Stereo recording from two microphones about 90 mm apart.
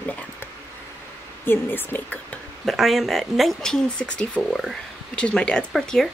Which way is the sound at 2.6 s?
Centre (ahead or behind).